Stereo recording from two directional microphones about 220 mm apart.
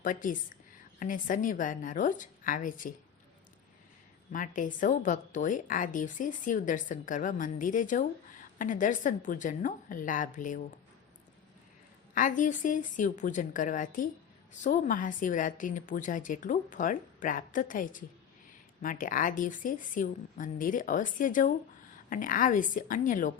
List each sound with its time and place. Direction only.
0.0 s a woman's voice: 35° left (ahead or behind)
4.3 s a woman's voice: 35° left (ahead or behind)
12.1 s a woman's voice: 35° left (ahead or behind)